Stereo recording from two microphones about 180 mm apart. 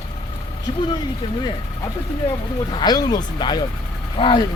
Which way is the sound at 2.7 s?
25° left (ahead or behind).